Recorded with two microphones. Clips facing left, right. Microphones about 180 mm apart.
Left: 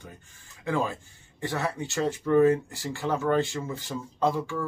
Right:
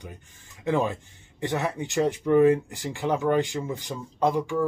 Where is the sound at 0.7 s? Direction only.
20° right (ahead or behind).